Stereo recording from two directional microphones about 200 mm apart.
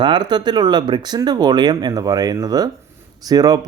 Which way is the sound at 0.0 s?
20° right (ahead or behind).